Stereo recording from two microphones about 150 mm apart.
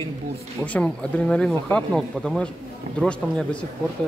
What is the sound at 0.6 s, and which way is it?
Speech, 10° left (ahead or behind).